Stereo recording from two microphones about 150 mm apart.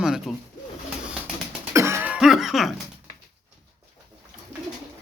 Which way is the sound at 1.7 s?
20° right (ahead or behind).